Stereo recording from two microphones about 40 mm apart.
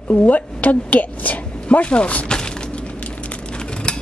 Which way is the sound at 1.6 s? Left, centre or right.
Left.